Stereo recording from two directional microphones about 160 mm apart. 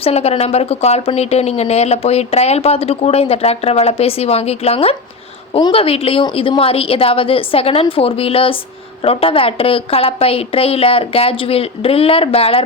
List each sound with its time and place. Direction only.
0.0 s speech: 40° left (ahead or behind)